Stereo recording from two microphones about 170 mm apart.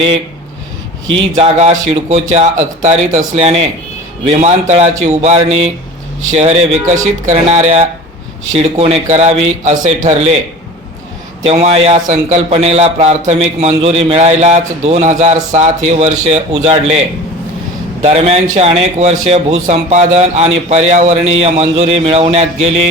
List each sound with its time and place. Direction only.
1.4 s speech: 40° right (ahead or behind)
11.4 s speech: 40° right (ahead or behind)
18.0 s speech: 35° right (ahead or behind)